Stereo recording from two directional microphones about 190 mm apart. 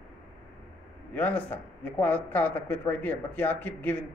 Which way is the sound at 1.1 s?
10° left (ahead or behind).